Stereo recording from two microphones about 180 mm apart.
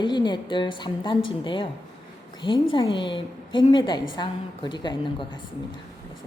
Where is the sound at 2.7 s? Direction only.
25° left (ahead or behind).